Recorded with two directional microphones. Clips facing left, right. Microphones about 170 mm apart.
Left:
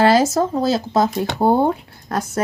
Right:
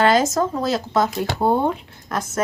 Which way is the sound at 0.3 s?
30° left (ahead or behind).